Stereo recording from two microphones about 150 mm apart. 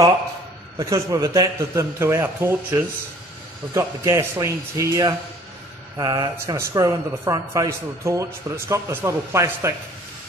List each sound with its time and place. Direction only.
0.7 s a man's voice: 20° right (ahead or behind)